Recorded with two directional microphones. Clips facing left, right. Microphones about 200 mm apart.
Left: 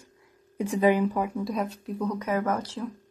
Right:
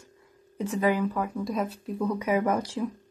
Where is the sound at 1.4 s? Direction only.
Centre (ahead or behind).